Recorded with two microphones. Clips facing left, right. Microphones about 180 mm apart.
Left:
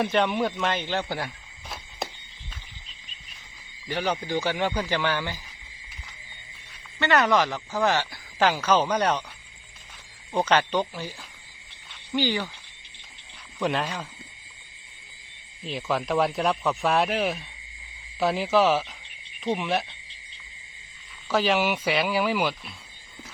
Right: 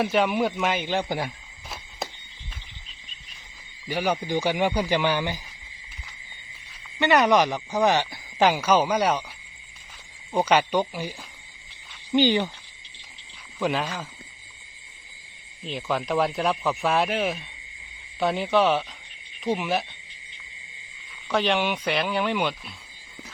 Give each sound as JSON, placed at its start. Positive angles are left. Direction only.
{"t": 0.0, "sound": "speech", "side_deg": -5}
{"t": 3.8, "sound": "speech", "side_deg": -10}
{"t": 7.0, "sound": "speech", "side_deg": -15}
{"t": 10.3, "sound": "speech", "side_deg": -10}
{"t": 12.1, "sound": "frog", "side_deg": -20}
{"t": 13.6, "sound": "speech", "side_deg": 0}
{"t": 15.6, "sound": "speech", "side_deg": 0}
{"t": 21.2, "sound": "speech", "side_deg": 0}